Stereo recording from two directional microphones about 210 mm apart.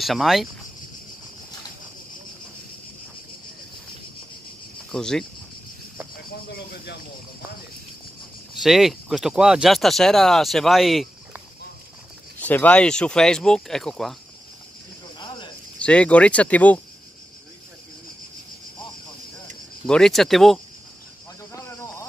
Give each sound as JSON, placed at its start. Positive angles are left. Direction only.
{"t": 0.0, "sound": "speech", "side_deg": 0}
{"t": 4.9, "sound": "speech", "side_deg": 0}
{"t": 8.5, "sound": "speech", "side_deg": 0}
{"t": 15.1, "sound": "a sound", "side_deg": 20}
{"t": 15.8, "sound": "speech", "side_deg": 5}
{"t": 19.9, "sound": "speech", "side_deg": 0}